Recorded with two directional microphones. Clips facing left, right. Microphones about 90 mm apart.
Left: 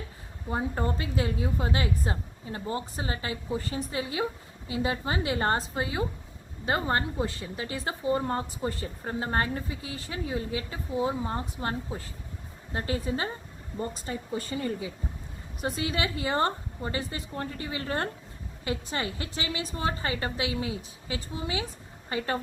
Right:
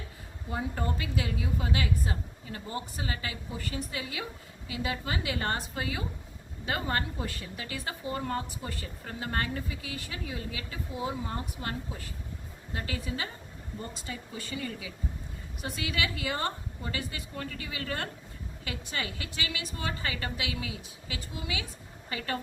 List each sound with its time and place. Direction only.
0.5 s a woman's voice: 30° left (ahead or behind)